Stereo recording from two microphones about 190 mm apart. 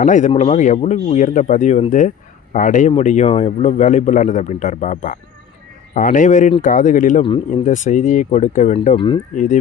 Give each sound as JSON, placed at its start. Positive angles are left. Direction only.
{"t": 0.0, "sound": "speech", "side_deg": 40}
{"t": 0.3, "sound": "speech", "side_deg": 30}
{"t": 7.2, "sound": "speech", "side_deg": 30}
{"t": 7.6, "sound": "speech", "side_deg": 40}
{"t": 9.3, "sound": "speech", "side_deg": 40}